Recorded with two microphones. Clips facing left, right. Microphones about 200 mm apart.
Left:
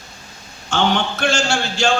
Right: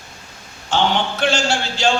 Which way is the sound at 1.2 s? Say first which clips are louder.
Even; 50° left (ahead or behind).